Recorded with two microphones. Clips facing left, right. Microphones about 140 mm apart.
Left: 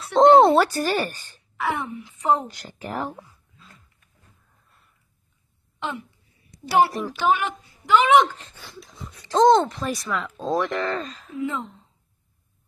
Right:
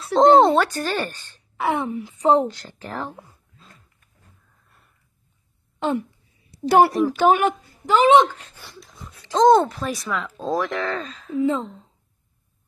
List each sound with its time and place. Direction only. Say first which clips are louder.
0.1 s speech: even; centre (ahead or behind)
1.6 s a woman's voice: right 4 dB; 25° right (ahead or behind)
2.4 s speech: right 5 dB; 15° left (ahead or behind)
5.8 s speech: right 8 dB; 45° right (ahead or behind)
6.9 s speech: right 9 dB; centre (ahead or behind)
7.2 s a woman's voice: right 3 dB; 45° right (ahead or behind)
8.4 s speech: left 1 dB; 5° right (ahead or behind)
9.2 s speech: even; 10° left (ahead or behind)
9.5 s speech: right 2 dB; 5° right (ahead or behind)
11.3 s a woman's voice: right 7 dB; 30° right (ahead or behind)